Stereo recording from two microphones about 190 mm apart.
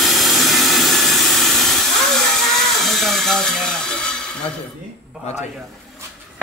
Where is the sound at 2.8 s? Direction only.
Centre (ahead or behind).